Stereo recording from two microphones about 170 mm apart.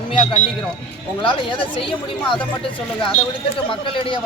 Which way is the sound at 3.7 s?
30° left (ahead or behind).